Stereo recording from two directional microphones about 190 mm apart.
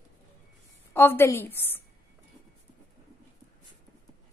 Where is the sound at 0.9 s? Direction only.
10° left (ahead or behind).